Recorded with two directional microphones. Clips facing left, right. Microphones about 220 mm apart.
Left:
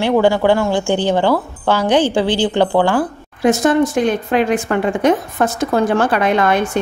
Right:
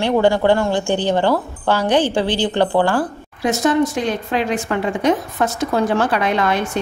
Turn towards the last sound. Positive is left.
turn(degrees=50)  # may be behind; listen again after turning